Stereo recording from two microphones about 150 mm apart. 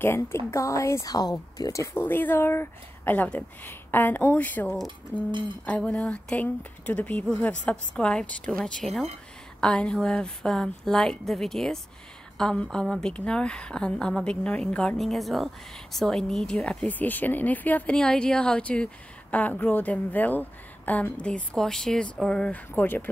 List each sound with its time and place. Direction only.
0.0 s a woman's voice: 15° left (ahead or behind)